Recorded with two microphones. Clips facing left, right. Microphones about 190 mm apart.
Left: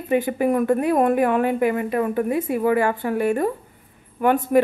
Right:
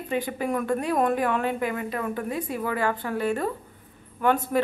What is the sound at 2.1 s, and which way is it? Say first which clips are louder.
A woman's voice: left 8 dB; 10° left (ahead or behind).